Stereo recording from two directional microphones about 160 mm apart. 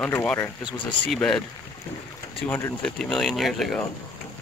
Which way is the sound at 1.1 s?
5° left (ahead or behind).